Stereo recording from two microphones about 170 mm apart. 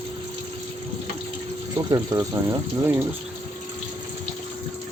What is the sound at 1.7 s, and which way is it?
Speech, 20° right (ahead or behind).